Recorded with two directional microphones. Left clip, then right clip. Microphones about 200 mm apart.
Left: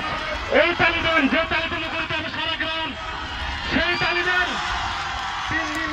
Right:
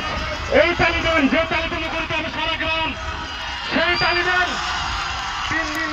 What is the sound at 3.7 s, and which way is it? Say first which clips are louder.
Music: right 3 dB; 30° right (ahead or behind).